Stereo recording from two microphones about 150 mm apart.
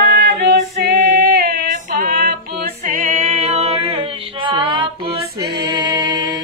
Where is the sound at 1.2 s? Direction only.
80° right; by 5.1 s 35° right (ahead or behind).